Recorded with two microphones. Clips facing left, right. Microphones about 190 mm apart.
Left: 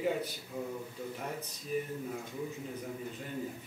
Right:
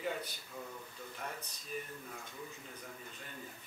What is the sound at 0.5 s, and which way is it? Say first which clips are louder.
Speech: left 9 dB; 20° left (ahead or behind).